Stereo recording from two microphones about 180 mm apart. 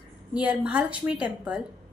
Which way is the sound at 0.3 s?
10° right (ahead or behind).